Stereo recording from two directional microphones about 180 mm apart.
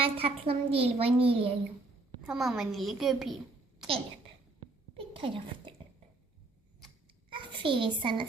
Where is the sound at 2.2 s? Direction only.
Centre (ahead or behind).